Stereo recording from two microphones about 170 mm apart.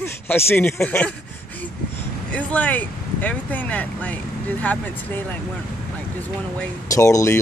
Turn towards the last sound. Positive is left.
turn(degrees=15)  # may be behind; listen again after turning